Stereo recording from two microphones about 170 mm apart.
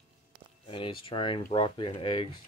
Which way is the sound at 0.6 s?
30° left (ahead or behind).